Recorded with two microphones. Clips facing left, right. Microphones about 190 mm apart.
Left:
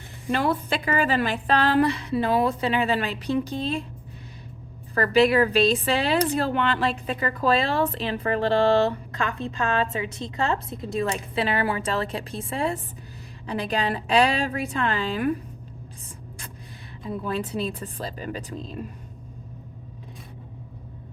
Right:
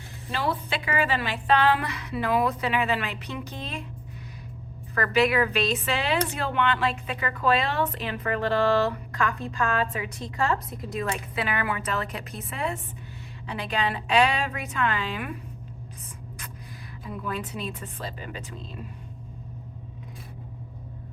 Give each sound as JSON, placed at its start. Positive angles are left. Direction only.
{"t": 0.3, "sound": "a woman's voice", "side_deg": 50}
{"t": 4.9, "sound": "a woman's voice", "side_deg": 30}
{"t": 17.1, "sound": "a woman's voice", "side_deg": 30}